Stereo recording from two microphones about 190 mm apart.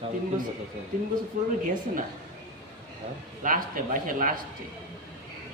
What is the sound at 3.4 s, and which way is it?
Speech, 45° right (ahead or behind).